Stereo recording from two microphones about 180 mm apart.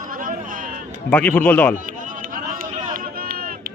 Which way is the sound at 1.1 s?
10° left (ahead or behind).